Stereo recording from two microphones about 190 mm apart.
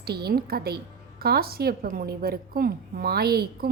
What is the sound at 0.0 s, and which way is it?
A woman's voice, 55° right (ahead or behind).